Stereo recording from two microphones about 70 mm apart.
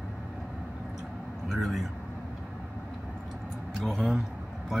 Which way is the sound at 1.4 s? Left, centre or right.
Centre.